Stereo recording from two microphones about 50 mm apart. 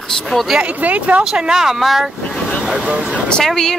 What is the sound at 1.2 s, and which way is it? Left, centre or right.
Speech, centre.